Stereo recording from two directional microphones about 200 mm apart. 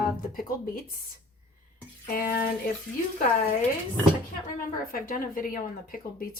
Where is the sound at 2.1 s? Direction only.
45° left (ahead or behind).